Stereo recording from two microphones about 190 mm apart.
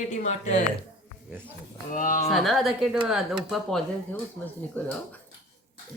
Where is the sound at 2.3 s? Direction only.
Centre (ahead or behind).